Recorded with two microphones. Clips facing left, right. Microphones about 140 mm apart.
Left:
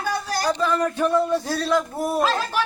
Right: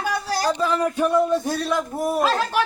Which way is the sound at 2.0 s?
Centre (ahead or behind).